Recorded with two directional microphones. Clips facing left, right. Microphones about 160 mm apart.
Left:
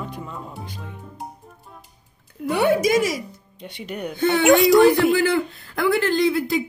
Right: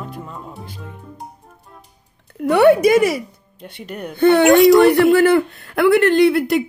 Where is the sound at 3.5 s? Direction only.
5° right (ahead or behind).